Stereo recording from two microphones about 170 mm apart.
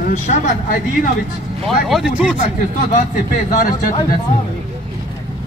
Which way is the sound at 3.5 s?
50° left (ahead or behind).